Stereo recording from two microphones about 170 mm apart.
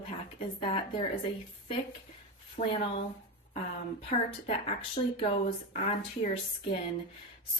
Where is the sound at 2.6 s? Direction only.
55° left (ahead or behind).